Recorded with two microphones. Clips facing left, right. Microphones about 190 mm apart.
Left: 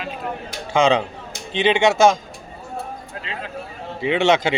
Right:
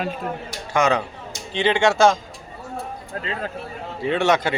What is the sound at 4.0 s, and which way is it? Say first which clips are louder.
Speech: left 2 dB; 20° left (ahead or behind).